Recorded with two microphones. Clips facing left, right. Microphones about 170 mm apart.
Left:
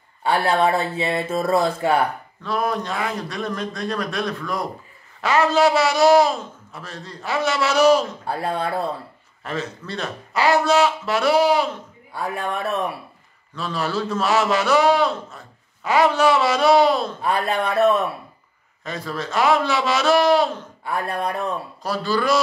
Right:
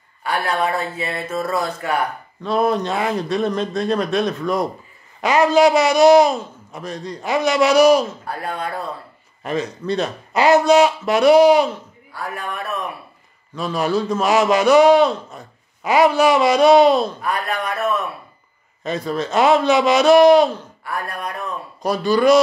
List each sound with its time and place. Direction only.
0.2 s speech: 30° left (ahead or behind)
2.4 s a man's voice: 25° right (ahead or behind)
8.3 s speech: 30° left (ahead or behind)
9.4 s a man's voice: 15° right (ahead or behind)
12.1 s speech: 25° left (ahead or behind)
13.6 s a man's voice: 15° right (ahead or behind)
17.2 s speech: 30° left (ahead or behind)
18.9 s a man's voice: 20° right (ahead or behind)
20.8 s speech: 25° left (ahead or behind)
21.8 s a man's voice: 15° right (ahead or behind)